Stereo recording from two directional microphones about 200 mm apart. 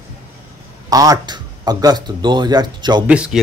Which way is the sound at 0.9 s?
20° right (ahead or behind).